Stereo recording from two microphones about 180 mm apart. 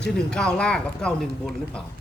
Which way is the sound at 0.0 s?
5° left (ahead or behind).